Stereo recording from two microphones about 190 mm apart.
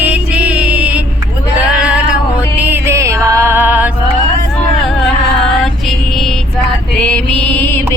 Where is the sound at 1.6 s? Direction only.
5° right (ahead or behind).